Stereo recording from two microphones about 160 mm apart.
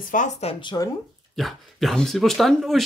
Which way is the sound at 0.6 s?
25° left (ahead or behind).